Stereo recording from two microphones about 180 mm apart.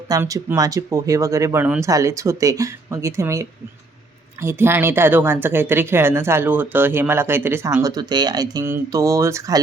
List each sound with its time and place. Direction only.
0.1 s speech: 20° right (ahead or behind)